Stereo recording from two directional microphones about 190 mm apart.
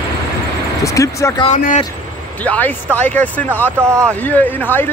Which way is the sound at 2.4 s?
10° left (ahead or behind).